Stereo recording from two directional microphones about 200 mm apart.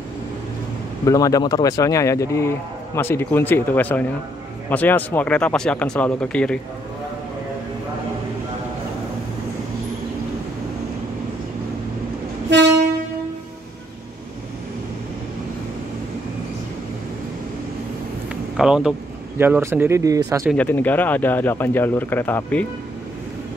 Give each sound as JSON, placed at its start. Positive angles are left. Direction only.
{"t": 1.0, "sound": "speech", "side_deg": 15}
{"t": 12.4, "sound": "train", "side_deg": -60}
{"t": 18.6, "sound": "speech", "side_deg": -5}
{"t": 20.4, "sound": "speech", "side_deg": 10}